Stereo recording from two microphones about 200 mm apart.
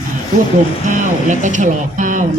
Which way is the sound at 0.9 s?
40° right (ahead or behind).